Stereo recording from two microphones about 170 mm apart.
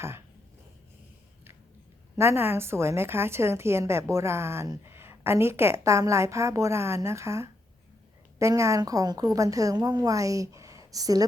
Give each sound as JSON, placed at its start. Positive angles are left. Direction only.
{"t": 2.1, "sound": "a woman's voice", "side_deg": -15}